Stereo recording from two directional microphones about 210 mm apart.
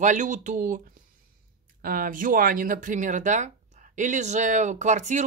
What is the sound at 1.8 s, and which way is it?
Speech, 45° right (ahead or behind).